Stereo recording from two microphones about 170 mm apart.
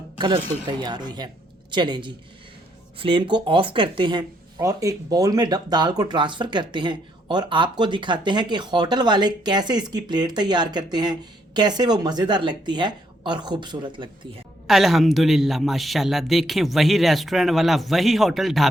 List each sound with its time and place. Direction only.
0.2 s speech: 25° right (ahead or behind)
14.7 s a man's voice: centre (ahead or behind)